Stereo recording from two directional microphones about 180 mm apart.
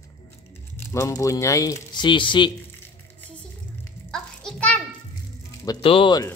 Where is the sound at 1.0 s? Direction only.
20° left (ahead or behind).